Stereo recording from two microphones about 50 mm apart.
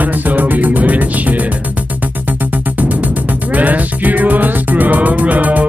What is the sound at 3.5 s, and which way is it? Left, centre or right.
Music, right.